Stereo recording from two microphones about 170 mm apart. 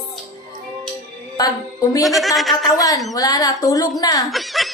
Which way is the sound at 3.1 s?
20° left (ahead or behind).